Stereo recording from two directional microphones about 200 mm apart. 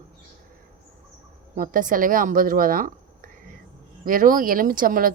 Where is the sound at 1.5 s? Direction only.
40° right (ahead or behind).